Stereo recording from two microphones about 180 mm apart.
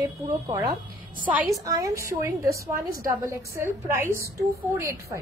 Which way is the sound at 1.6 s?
20° right (ahead or behind).